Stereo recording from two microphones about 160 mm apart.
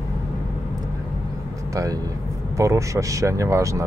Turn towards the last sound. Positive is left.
turn(degrees=-20)  # may be behind; listen again after turning